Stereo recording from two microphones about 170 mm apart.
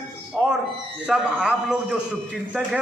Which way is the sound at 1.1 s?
5° right (ahead or behind).